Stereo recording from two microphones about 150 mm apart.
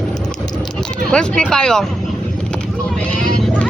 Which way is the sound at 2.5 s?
5° left (ahead or behind).